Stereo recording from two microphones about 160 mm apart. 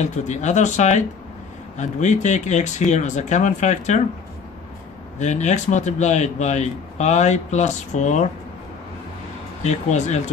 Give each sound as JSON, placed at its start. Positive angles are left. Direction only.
{"t": 0.0, "sound": "a man's voice", "side_deg": 45}
{"t": 5.2, "sound": "a man's voice", "side_deg": 45}
{"t": 9.6, "sound": "a man's voice", "side_deg": 45}